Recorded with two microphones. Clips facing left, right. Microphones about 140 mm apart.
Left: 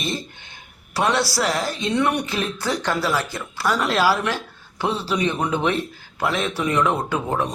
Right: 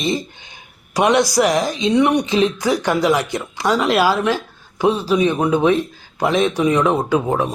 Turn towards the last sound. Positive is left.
turn(degrees=-15)  # may be behind; listen again after turning